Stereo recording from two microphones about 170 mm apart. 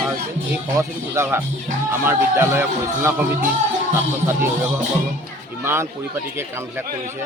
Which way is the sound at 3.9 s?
15° right (ahead or behind).